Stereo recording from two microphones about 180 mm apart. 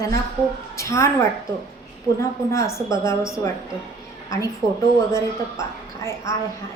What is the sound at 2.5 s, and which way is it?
Speech, 15° left (ahead or behind).